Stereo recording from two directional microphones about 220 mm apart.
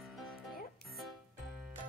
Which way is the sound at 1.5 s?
Centre (ahead or behind).